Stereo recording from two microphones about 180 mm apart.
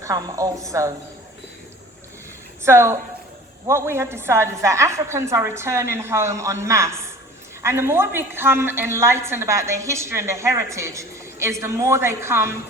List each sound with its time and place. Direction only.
0.0 s a woman's voice: 20° right (ahead or behind)
2.6 s a woman's voice: 15° right (ahead or behind)